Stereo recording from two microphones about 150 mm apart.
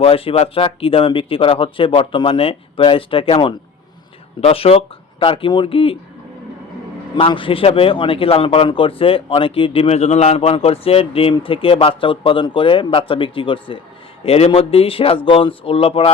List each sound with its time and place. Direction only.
0.0 s speech: 40° left (ahead or behind)
7.2 s speech: 35° left (ahead or behind)